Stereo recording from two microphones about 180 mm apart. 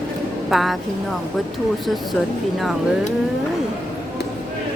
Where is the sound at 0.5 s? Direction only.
Centre (ahead or behind).